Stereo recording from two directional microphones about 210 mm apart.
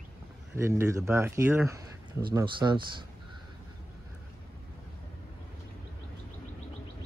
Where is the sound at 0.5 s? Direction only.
10° right (ahead or behind).